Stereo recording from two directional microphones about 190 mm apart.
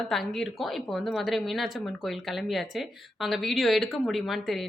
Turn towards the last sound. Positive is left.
turn(degrees=0)  # may be behind; listen again after turning